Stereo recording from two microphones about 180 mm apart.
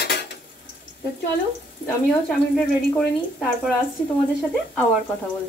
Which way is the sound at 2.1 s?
5° left (ahead or behind).